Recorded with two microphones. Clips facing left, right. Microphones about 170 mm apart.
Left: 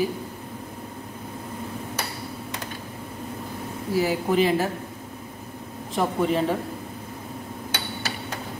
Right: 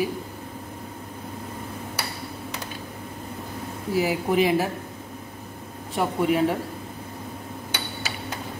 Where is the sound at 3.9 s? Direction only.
15° right (ahead or behind).